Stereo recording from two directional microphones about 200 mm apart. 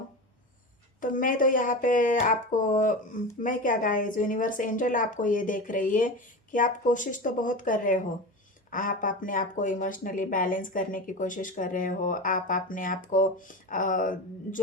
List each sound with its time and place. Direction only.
1.0 s a woman's voice: 40° left (ahead or behind)